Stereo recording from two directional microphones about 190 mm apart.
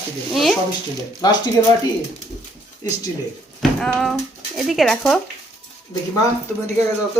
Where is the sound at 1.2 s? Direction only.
20° left (ahead or behind).